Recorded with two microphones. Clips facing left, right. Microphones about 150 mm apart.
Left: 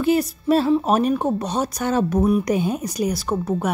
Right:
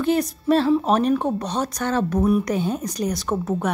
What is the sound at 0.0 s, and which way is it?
A woman's voice, 5° left (ahead or behind).